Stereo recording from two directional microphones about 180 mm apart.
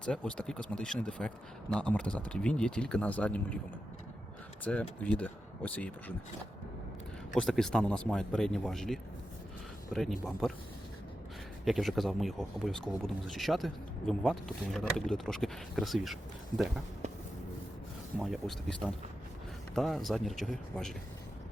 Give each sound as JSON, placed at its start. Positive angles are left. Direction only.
{"t": 0.0, "sound": "speech", "side_deg": 5}
{"t": 4.6, "sound": "speech", "side_deg": 5}
{"t": 7.3, "sound": "speech", "side_deg": 5}
{"t": 11.6, "sound": "speech", "side_deg": 0}
{"t": 18.2, "sound": "speech", "side_deg": 0}